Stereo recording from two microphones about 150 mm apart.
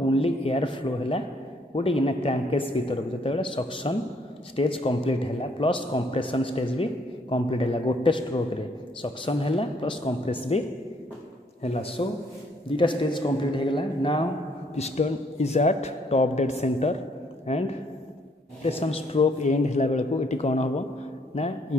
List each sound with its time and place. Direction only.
0.1 s a man's voice: 40° left (ahead or behind)
11.6 s a man's voice: 40° left (ahead or behind)
14.8 s a man's voice: 45° left (ahead or behind)